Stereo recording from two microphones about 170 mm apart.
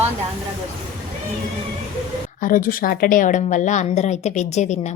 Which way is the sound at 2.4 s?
55° left (ahead or behind).